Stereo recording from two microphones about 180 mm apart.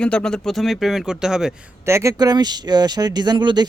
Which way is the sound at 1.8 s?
15° right (ahead or behind).